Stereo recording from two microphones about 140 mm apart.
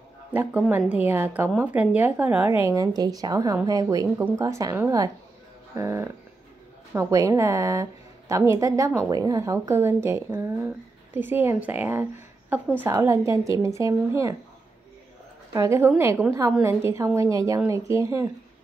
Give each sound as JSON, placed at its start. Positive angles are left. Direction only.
{"t": 0.3, "sound": "a woman's voice", "side_deg": -10}
{"t": 15.5, "sound": "a woman's voice", "side_deg": -20}